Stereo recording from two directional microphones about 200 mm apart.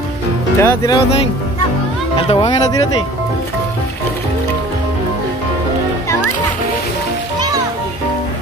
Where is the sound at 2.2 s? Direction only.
30° left (ahead or behind).